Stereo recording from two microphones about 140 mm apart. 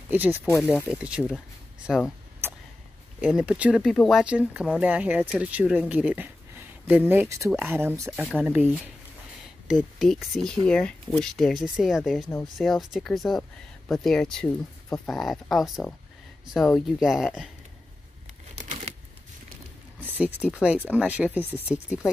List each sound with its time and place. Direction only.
0.1 s speech: 15° right (ahead or behind)
0.7 s speech: centre (ahead or behind)
3.2 s speech: 5° right (ahead or behind)
3.9 s speech: 5° left (ahead or behind)
4.2 s speech: 10° right (ahead or behind)
8.2 s speech: 5° left (ahead or behind)
8.5 s speech: 10° right (ahead or behind)
18.6 s crumpling: 55° right (ahead or behind)
20.0 s speech: 10° right (ahead or behind)